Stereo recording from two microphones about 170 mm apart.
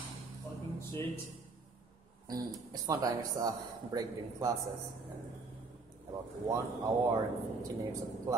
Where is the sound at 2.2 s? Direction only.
20° right (ahead or behind).